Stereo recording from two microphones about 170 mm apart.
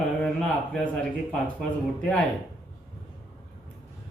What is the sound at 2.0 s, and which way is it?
Speech, 5° left (ahead or behind).